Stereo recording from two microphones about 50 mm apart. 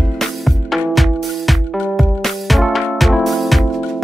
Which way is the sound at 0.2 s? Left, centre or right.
Centre.